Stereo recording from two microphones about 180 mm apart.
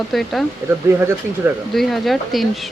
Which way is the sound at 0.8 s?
15° right (ahead or behind).